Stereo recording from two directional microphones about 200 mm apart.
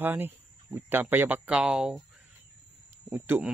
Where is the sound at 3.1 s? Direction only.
10° right (ahead or behind).